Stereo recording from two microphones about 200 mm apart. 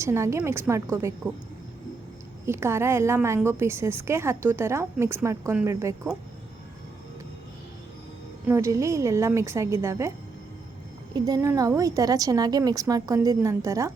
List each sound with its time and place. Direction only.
0.0 s a woman's voice: 15° right (ahead or behind)
2.5 s a woman's voice: 15° right (ahead or behind)
8.4 s a woman's voice: 15° right (ahead or behind)
11.1 s a woman's voice: 15° right (ahead or behind)